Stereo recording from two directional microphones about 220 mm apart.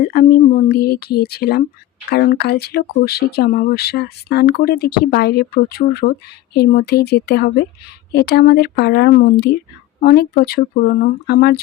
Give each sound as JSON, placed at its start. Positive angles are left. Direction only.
{"t": 0.0, "sound": "speech", "side_deg": 40}